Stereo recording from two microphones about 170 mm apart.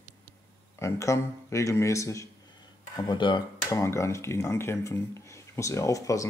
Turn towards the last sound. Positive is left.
turn(degrees=20)  # may be behind; listen again after turning